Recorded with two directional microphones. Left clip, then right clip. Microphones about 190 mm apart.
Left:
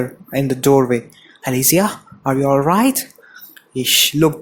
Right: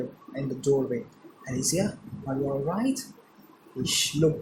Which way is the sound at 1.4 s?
45° left (ahead or behind).